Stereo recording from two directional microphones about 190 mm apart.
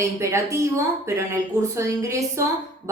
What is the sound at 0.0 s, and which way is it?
A woman's voice, 15° right (ahead or behind).